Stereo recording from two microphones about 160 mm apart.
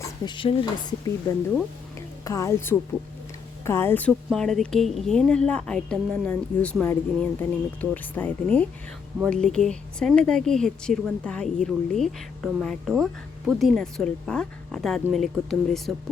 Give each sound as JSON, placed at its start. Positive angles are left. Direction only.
{"t": 0.3, "sound": "a woman's voice", "side_deg": 30}